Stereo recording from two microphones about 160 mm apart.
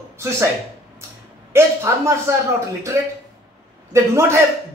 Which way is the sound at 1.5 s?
15° right (ahead or behind).